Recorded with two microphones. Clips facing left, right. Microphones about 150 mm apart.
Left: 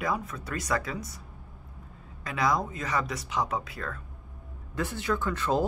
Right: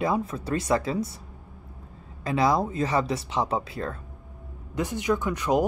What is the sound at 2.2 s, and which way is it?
Speech, 30° right (ahead or behind).